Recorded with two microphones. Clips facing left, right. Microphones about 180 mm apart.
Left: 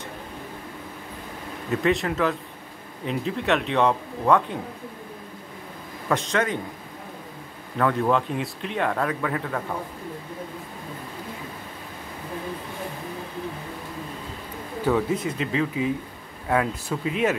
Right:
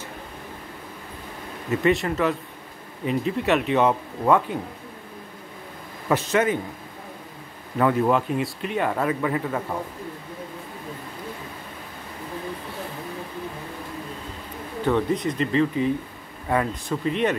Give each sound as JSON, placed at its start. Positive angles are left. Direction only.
{"t": 1.7, "sound": "speech", "side_deg": 0}
{"t": 6.0, "sound": "a man's voice", "side_deg": -5}
{"t": 7.7, "sound": "speech", "side_deg": -5}
{"t": 14.9, "sound": "speech", "side_deg": 5}